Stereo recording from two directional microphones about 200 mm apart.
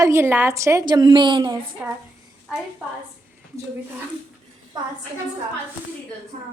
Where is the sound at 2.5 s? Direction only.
Centre (ahead or behind).